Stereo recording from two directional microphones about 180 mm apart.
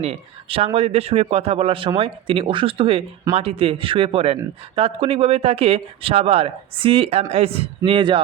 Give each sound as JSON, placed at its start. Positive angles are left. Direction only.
{"t": 0.0, "sound": "speech", "side_deg": -35}